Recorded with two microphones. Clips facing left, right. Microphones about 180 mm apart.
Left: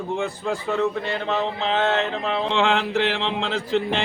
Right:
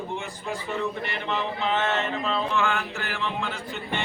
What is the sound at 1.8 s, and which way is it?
Mantra, 75° left (ahead or behind).